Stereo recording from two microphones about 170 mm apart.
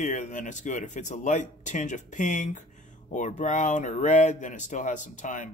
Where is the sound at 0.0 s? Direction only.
45° left (ahead or behind).